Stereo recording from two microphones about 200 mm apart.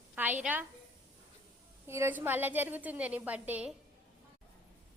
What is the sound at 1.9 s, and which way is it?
A woman's voice, 10° right (ahead or behind).